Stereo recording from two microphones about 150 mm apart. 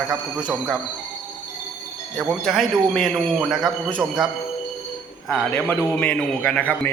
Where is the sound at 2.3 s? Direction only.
Centre (ahead or behind).